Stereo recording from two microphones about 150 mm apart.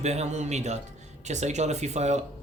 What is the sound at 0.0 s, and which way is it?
Speech, 50° right (ahead or behind).